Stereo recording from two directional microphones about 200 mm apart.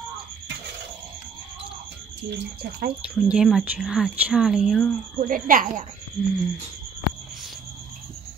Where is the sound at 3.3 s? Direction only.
5° right (ahead or behind).